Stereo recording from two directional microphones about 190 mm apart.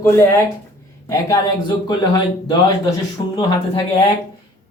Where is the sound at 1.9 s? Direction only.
25° left (ahead or behind).